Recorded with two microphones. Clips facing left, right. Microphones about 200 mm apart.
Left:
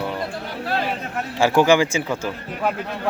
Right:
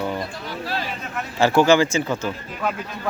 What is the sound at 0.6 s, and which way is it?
Speech, 55° left (ahead or behind).